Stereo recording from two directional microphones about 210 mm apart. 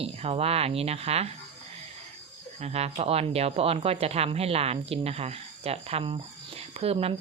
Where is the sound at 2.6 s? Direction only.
30° right (ahead or behind).